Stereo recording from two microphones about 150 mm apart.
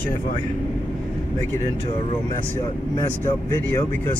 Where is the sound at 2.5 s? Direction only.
20° left (ahead or behind).